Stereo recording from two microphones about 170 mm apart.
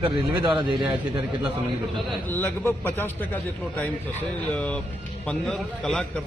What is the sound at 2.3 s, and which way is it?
A man's voice, 10° left (ahead or behind).